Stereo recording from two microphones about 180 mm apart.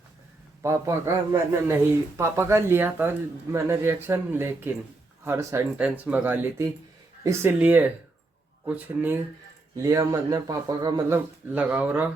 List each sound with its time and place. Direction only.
0.6 s speech: 15° right (ahead or behind)
11.5 s speech: 10° right (ahead or behind)